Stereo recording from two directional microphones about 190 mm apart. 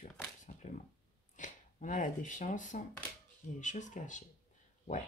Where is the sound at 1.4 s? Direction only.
40° left (ahead or behind).